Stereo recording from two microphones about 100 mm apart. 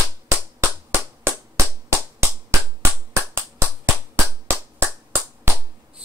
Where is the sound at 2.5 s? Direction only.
25° right (ahead or behind).